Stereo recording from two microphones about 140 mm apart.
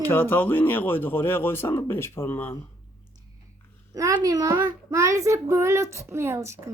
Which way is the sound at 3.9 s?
25° right (ahead or behind).